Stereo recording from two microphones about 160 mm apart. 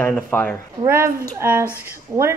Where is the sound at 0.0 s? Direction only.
10° left (ahead or behind).